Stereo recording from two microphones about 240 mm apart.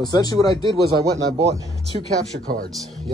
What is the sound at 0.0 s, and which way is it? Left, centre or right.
Speech, centre.